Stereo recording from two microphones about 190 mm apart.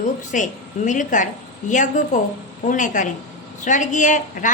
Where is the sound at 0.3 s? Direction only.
40° left (ahead or behind).